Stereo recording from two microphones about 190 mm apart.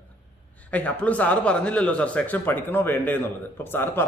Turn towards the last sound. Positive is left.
turn(degrees=10)  # may be behind; listen again after turning